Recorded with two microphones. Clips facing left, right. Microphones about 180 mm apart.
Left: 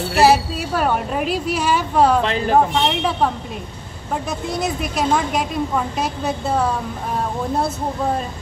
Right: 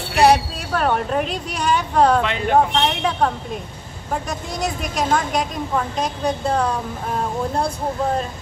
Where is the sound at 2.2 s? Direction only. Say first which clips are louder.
Left 2 dB; 35° left (ahead or behind).